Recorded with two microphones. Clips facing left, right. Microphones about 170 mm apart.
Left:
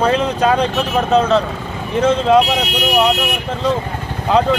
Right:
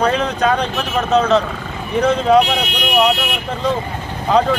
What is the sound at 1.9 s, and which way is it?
Speech, centre (ahead or behind).